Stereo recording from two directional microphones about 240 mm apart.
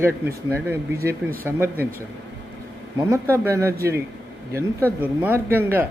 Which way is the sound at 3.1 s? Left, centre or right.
Centre.